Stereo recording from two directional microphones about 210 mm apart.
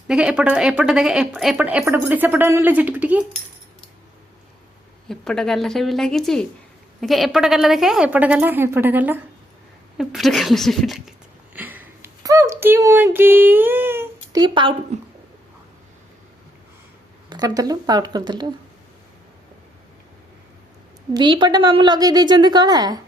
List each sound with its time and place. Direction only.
0.1 s speech: 5° right (ahead or behind)
5.0 s a woman's voice: centre (ahead or behind); by 14.8 s 25° right (ahead or behind)
17.2 s a woman's voice: 20° right (ahead or behind)
21.1 s a woman's voice: 20° right (ahead or behind)